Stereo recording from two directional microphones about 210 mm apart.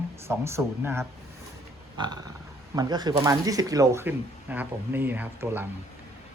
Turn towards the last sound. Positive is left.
turn(degrees=-10)  # may be behind; listen again after turning